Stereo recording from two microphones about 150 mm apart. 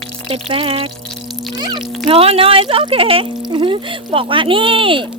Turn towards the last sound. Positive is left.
turn(degrees=-35)  # may be behind; listen again after turning